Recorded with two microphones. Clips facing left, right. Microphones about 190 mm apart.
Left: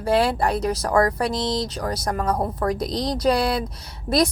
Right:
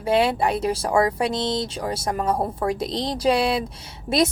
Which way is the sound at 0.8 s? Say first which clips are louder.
Left 2 dB; 10° right (ahead or behind).